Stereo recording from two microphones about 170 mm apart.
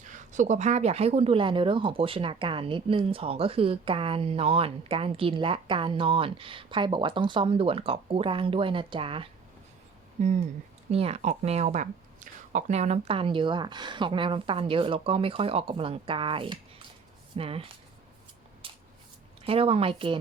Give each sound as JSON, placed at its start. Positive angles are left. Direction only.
{"t": 0.0, "sound": "speech", "side_deg": -45}
{"t": 10.2, "sound": "speech", "side_deg": -45}
{"t": 18.6, "sound": "a sound", "side_deg": -30}
{"t": 19.5, "sound": "speech", "side_deg": -35}